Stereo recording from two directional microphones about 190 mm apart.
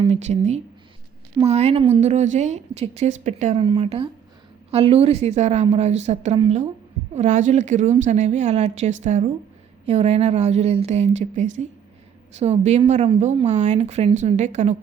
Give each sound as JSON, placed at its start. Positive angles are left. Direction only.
{"t": 0.1, "sound": "a woman's voice", "side_deg": -35}
{"t": 2.0, "sound": "a woman's voice", "side_deg": -35}